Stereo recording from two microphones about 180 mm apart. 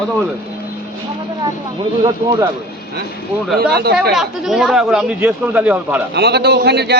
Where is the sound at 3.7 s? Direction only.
65° right (ahead or behind).